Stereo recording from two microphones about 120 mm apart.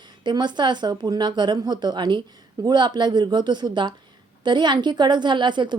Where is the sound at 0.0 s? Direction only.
40° right (ahead or behind).